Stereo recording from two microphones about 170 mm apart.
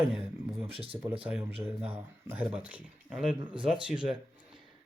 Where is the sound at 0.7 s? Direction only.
35° right (ahead or behind).